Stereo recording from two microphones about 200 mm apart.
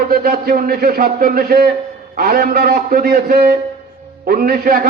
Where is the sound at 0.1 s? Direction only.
50° right (ahead or behind).